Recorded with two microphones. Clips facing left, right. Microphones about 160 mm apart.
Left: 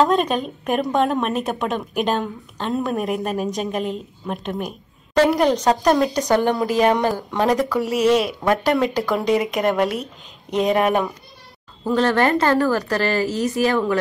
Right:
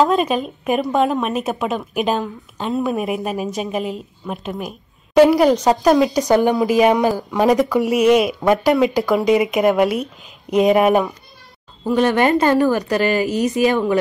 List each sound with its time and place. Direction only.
0.0 s a woman's voice: centre (ahead or behind); by 13.9 s 20° right (ahead or behind)